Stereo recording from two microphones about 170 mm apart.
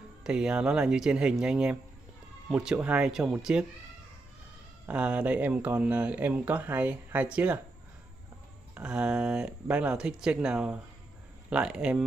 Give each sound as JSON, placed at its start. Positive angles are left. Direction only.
{"t": 0.2, "sound": "speech", "side_deg": -5}
{"t": 4.8, "sound": "speech", "side_deg": -5}
{"t": 8.7, "sound": "speech", "side_deg": -5}